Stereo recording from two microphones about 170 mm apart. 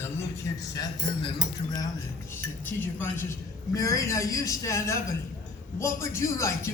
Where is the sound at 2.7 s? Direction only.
10° left (ahead or behind).